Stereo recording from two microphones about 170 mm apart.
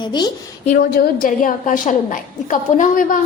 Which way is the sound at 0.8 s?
60° left (ahead or behind).